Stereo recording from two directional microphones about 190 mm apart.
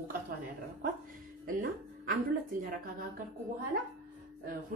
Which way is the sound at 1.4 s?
50° right (ahead or behind).